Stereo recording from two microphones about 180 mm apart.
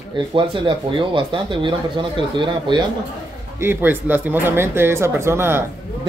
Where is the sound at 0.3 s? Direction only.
30° right (ahead or behind).